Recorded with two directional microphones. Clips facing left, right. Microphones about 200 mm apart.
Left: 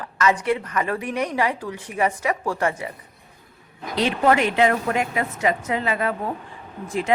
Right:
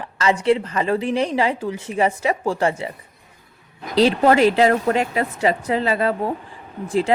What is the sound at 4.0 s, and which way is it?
A woman's voice, 35° right (ahead or behind).